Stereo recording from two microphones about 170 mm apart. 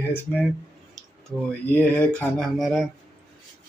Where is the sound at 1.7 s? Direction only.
10° left (ahead or behind).